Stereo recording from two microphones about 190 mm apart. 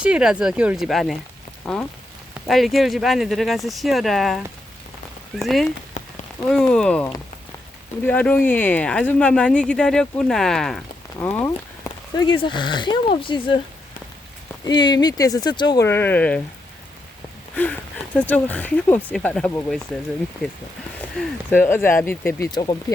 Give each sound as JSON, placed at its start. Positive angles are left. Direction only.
{"t": 0.0, "sound": "speech", "side_deg": -5}
{"t": 1.6, "sound": "rain on surface", "side_deg": 5}
{"t": 2.3, "sound": "speech", "side_deg": 0}
{"t": 14.6, "sound": "speech", "side_deg": 25}
{"t": 17.5, "sound": "speech", "side_deg": 10}
{"t": 21.2, "sound": "speech", "side_deg": 10}
{"t": 22.5, "sound": "speech", "side_deg": 25}